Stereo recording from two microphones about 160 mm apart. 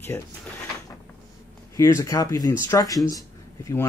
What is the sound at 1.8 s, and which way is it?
Speech, 20° left (ahead or behind).